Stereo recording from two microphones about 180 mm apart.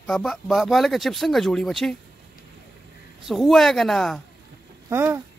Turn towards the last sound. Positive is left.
turn(degrees=-15)  # may be behind; listen again after turning